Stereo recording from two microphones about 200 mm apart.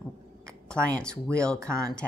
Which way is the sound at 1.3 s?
5° left (ahead or behind).